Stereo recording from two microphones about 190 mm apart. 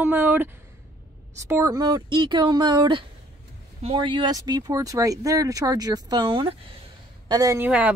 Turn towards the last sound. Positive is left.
turn(degrees=-5)  # may be behind; listen again after turning